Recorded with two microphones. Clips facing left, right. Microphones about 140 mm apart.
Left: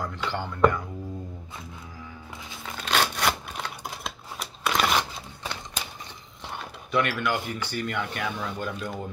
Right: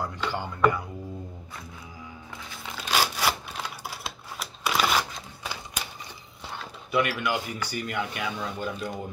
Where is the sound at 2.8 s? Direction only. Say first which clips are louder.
Left 1 dB; 5° right (ahead or behind).